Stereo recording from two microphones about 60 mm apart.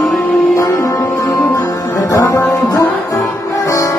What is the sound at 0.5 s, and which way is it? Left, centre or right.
Music, left.